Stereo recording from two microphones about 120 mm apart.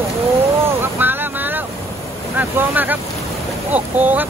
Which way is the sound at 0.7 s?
15° right (ahead or behind).